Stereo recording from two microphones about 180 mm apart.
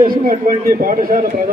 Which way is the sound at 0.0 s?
50° right (ahead or behind).